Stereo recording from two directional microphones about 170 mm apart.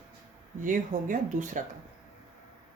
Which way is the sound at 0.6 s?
50° right (ahead or behind).